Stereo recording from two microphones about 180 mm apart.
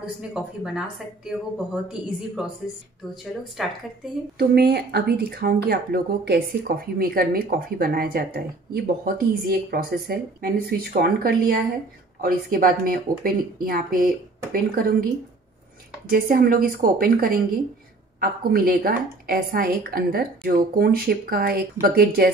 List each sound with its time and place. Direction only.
0.3 s speech: 5° right (ahead or behind)
3.6 s speech: centre (ahead or behind)
4.4 s speech: 65° right (ahead or behind)
16.1 s speech: 55° right (ahead or behind)